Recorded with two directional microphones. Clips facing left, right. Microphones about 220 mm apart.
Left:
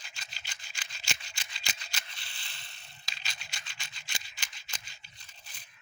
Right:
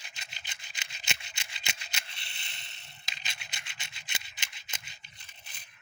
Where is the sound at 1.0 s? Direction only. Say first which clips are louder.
Right 1 dB; 25° right (ahead or behind).